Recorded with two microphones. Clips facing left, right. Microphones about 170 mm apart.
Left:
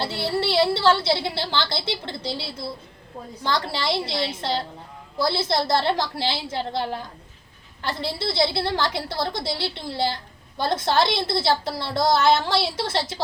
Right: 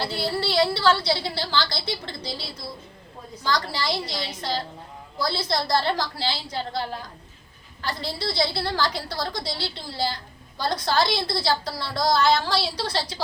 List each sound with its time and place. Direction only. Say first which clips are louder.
0.0 s a woman's voice: left 2 dB; 25° left (ahead or behind)